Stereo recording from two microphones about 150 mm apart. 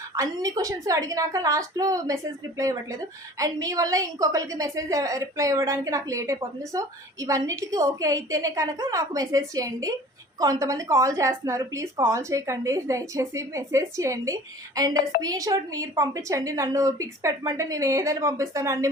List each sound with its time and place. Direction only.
0.2 s a woman's voice: 25° right (ahead or behind)